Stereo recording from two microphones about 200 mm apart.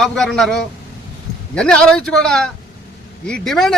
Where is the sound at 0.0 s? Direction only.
Centre (ahead or behind).